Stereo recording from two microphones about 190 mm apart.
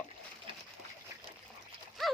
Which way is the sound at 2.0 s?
Centre (ahead or behind).